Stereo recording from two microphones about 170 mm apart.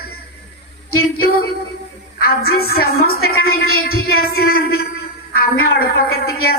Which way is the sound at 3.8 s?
60° left (ahead or behind).